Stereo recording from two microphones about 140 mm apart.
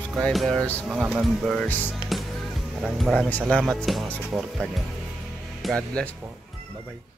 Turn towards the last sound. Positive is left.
turn(degrees=5)  # may be behind; listen again after turning